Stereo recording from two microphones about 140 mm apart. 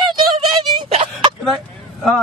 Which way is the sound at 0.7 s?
40° right (ahead or behind).